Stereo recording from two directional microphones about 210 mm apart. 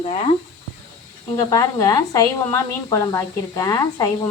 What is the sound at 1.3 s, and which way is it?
A woman's voice, 15° left (ahead or behind).